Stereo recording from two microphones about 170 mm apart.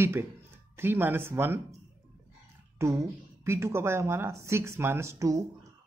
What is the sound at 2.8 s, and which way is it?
Speech, 15° right (ahead or behind).